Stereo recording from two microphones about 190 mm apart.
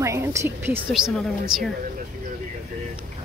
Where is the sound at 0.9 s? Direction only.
5° right (ahead or behind).